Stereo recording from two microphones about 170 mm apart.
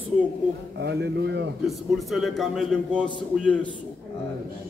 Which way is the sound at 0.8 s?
75° right (ahead or behind).